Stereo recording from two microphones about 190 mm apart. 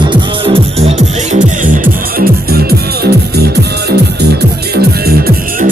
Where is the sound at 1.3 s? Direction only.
45° right (ahead or behind).